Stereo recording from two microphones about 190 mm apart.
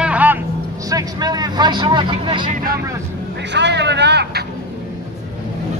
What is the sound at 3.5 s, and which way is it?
Speech, 65° right (ahead or behind).